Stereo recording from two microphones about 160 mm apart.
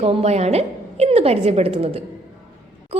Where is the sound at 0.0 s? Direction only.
40° right (ahead or behind).